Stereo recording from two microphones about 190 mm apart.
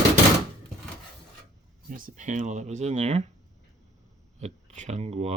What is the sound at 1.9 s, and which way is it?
Speech, 45° right (ahead or behind).